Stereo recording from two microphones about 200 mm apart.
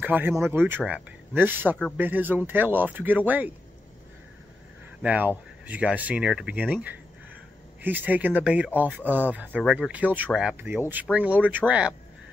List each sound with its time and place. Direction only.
0.0 s speech: 10° right (ahead or behind)
5.0 s speech: 10° right (ahead or behind)